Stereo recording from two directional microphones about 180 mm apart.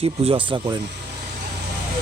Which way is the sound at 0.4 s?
25° right (ahead or behind).